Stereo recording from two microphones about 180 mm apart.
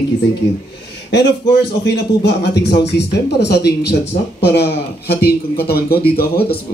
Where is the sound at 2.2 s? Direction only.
70° left (ahead or behind).